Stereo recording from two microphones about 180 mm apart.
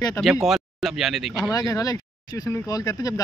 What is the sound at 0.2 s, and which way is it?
Speech, centre (ahead or behind).